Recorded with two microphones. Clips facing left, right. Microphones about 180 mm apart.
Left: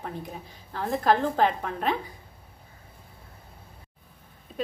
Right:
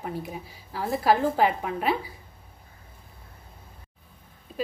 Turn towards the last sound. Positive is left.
turn(degrees=0)  # may be behind; listen again after turning